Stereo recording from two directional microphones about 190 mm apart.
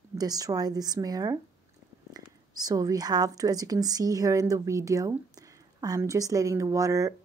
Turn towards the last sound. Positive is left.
turn(degrees=-15)  # may be behind; listen again after turning